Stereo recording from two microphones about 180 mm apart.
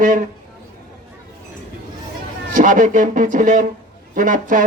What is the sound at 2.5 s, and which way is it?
A man's voice, 45° right (ahead or behind).